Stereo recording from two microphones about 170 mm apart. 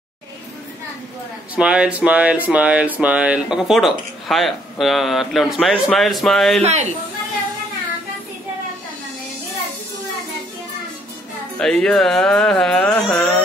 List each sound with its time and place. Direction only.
1.5 s speech: 5° right (ahead or behind)
6.6 s speech: 40° right (ahead or behind)
11.5 s speech: 5° left (ahead or behind)